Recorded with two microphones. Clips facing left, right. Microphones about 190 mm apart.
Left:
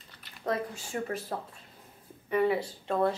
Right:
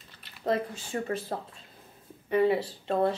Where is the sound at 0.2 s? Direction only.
25° right (ahead or behind).